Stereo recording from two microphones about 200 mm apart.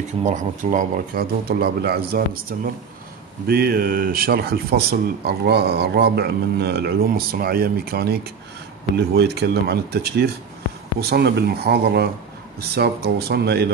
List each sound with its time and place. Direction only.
0.2 s speech: 40° right (ahead or behind); by 13.7 s 55° right (ahead or behind)